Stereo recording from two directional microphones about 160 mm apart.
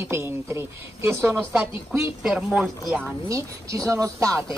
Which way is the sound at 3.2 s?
20° right (ahead or behind).